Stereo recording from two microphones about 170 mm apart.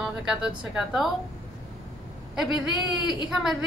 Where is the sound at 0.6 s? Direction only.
5° right (ahead or behind).